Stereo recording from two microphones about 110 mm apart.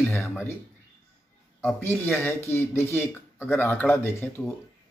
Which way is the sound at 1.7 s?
15° left (ahead or behind).